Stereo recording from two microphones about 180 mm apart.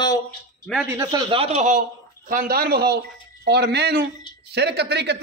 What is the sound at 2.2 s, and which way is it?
A man's voice, 55° right (ahead or behind).